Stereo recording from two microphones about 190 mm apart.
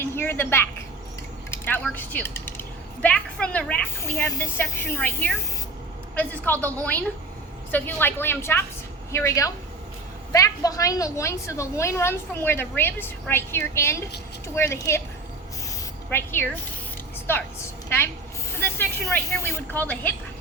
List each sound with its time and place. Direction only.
0.0 s a sound: 10° left (ahead or behind)
1.5 s a woman's voice: 10° left (ahead or behind)
16.0 s a woman's voice: 10° left (ahead or behind)
19.1 s a woman's voice: 15° left (ahead or behind)